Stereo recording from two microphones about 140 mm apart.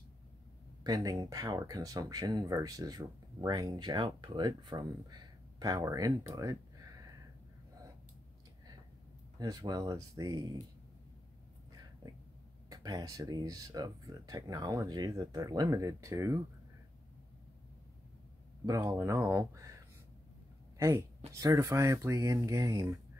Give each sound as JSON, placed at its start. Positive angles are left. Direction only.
{"t": 0.8, "sound": "speech", "side_deg": -25}
{"t": 9.4, "sound": "speech", "side_deg": -30}
{"t": 12.6, "sound": "speech", "side_deg": -25}
{"t": 18.7, "sound": "speech", "side_deg": -25}
{"t": 20.7, "sound": "speech", "side_deg": -20}